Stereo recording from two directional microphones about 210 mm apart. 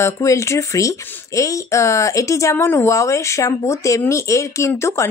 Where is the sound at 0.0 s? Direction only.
15° left (ahead or behind).